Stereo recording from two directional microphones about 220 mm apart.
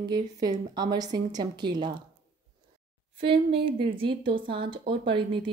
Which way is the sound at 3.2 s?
25° right (ahead or behind).